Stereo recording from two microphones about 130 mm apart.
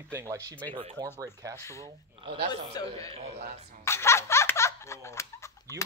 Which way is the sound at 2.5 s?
30° left (ahead or behind).